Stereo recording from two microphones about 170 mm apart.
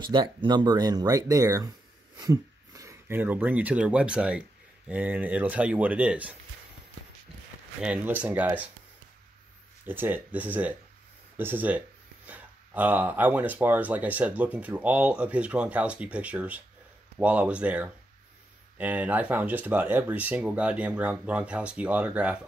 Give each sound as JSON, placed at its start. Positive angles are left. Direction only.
{"t": 0.0, "sound": "speech", "side_deg": -25}
{"t": 7.8, "sound": "speech", "side_deg": -10}
{"t": 9.8, "sound": "speech", "side_deg": -10}